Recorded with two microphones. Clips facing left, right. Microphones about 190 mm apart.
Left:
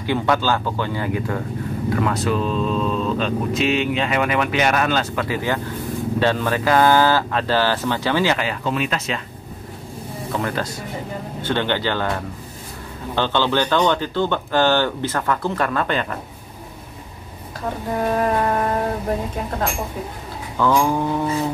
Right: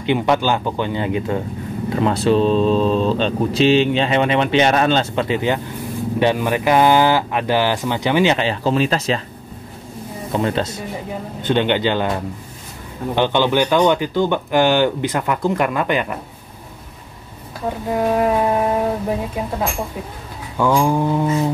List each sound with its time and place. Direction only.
0.0 s speech: 20° right (ahead or behind)
10.3 s speech: 25° right (ahead or behind)
13.1 s speech: 15° right (ahead or behind)
18.1 s speech: 10° right (ahead or behind)
20.5 s speech: 15° right (ahead or behind)